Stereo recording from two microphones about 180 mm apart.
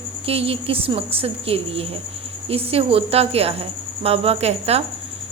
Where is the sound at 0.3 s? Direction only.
30° right (ahead or behind).